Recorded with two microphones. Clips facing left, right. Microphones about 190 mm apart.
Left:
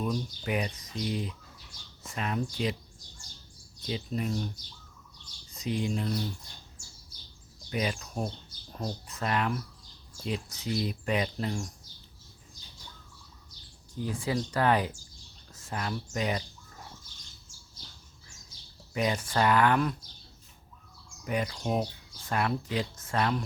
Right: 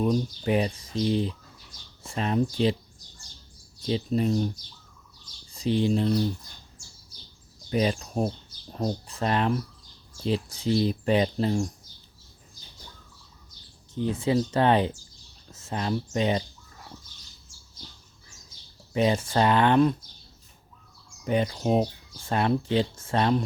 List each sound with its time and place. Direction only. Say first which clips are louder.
0.0 s speech: right 7 dB; 30° right (ahead or behind)
3.8 s speech: right 8 dB; 30° right (ahead or behind)
5.5 s speech: right 7 dB; 30° right (ahead or behind)
7.7 s speech: right 7 dB; 30° right (ahead or behind)
13.9 s speech: right 7 dB; 25° right (ahead or behind)
18.9 s speech: right 5 dB; 25° right (ahead or behind)
21.2 s speech: right 6 dB; 25° right (ahead or behind)